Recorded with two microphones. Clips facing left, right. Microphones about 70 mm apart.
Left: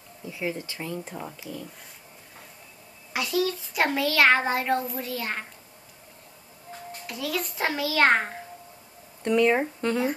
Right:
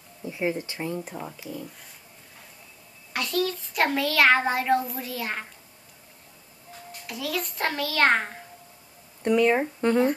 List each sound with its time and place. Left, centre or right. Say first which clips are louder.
0.2 s speech: right 4 dB; right
1.0 s a child's voice: right 1 dB; centre
3.1 s a child's voice: left 1 dB; centre
7.1 s a child's voice: even; centre